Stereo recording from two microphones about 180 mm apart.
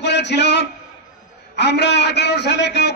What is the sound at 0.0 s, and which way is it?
A man's voice, 70° left (ahead or behind).